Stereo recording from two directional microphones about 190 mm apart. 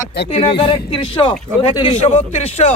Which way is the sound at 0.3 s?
30° left (ahead or behind).